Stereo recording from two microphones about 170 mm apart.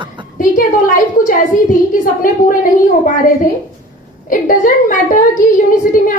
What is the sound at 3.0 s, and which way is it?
A woman's voice, 55° left (ahead or behind).